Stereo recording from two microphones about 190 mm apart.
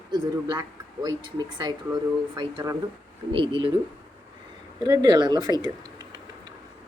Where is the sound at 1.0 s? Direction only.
20° right (ahead or behind).